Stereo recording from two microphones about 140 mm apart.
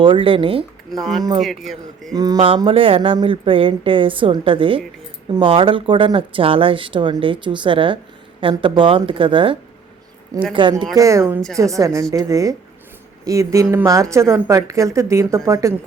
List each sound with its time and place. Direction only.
0.0 s speech: 40° right (ahead or behind)
0.9 s a man's voice: centre (ahead or behind)
2.1 s a woman's voice: 30° right (ahead or behind)
2.6 s speech: 40° right (ahead or behind)
10.9 s a woman's voice: 20° right (ahead or behind)